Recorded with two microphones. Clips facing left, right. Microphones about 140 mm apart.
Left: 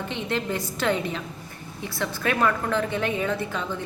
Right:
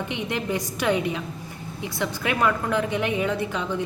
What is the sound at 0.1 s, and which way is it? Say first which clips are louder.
A woman's voice: left 1 dB; 15° right (ahead or behind).